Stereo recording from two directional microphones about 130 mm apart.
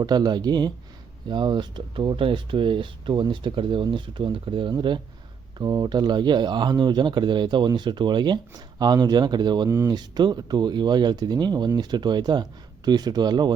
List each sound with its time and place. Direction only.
0.0 s speech: 30° right (ahead or behind)
9.6 s speech: 25° right (ahead or behind)